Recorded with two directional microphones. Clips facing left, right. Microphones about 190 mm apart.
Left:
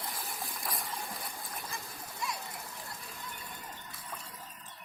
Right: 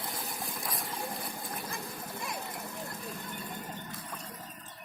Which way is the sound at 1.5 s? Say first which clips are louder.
Right 4 dB; 55° right (ahead or behind).